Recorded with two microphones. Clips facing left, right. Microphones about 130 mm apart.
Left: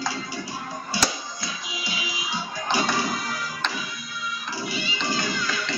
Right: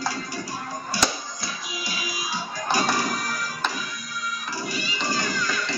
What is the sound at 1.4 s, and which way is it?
Music, 20° left (ahead or behind).